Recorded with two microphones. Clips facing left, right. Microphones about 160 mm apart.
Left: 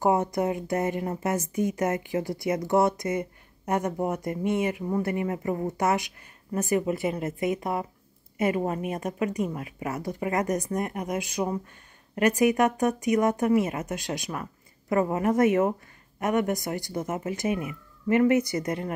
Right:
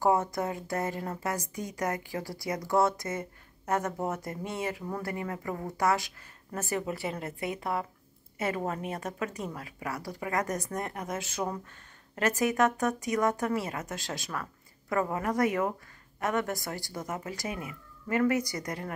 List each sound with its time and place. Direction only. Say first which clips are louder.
0.0 s a woman's voice: left 3 dB; 20° left (ahead or behind)